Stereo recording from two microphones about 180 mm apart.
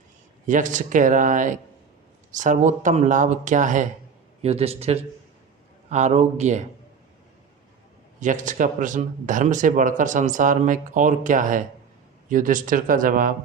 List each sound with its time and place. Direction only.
0.4 s speech: 45° right (ahead or behind)
4.4 s a man's voice: 35° right (ahead or behind)
8.2 s speech: 45° right (ahead or behind)